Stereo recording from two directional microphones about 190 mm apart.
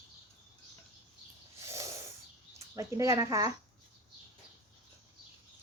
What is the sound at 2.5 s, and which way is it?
Speech, 15° right (ahead or behind).